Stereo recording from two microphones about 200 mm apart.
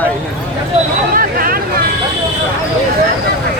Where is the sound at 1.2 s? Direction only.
45° right (ahead or behind).